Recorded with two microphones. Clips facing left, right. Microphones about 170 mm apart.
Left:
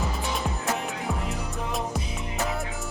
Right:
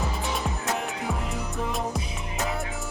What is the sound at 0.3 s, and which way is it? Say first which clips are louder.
Music: left 1 dB; centre (ahead or behind).